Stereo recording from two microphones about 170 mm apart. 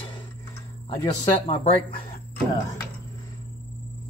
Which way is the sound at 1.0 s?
25° left (ahead or behind).